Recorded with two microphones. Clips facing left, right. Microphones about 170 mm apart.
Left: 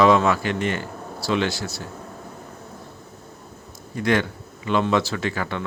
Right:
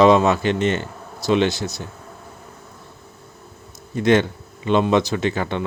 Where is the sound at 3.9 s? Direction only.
25° right (ahead or behind).